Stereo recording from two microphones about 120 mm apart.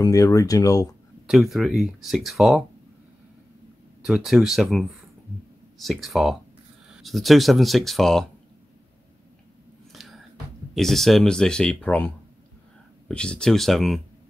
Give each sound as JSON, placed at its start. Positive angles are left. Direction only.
{"t": 0.0, "sound": "speech", "side_deg": 30}
{"t": 1.2, "sound": "speech", "side_deg": 0}
{"t": 4.0, "sound": "speech", "side_deg": 0}
{"t": 9.9, "sound": "music", "side_deg": 0}
{"t": 10.7, "sound": "speech", "side_deg": 0}
{"t": 13.1, "sound": "speech", "side_deg": 5}